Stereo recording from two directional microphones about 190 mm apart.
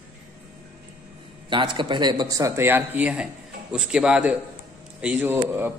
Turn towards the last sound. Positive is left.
turn(degrees=-10)  # may be behind; listen again after turning